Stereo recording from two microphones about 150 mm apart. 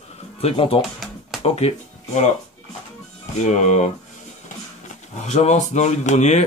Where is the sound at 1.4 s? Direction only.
45° left (ahead or behind).